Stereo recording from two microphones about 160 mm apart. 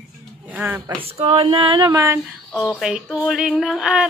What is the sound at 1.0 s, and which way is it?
Female singing, 40° right (ahead or behind).